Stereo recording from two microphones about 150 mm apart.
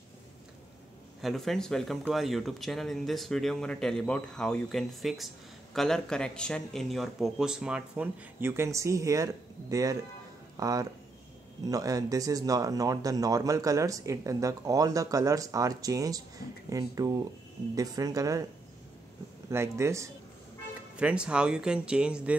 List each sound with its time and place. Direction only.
1.2 s speech: centre (ahead or behind); by 18.4 s 25° right (ahead or behind)
19.5 s speech: 20° right (ahead or behind)
20.9 s speech: 5° right (ahead or behind)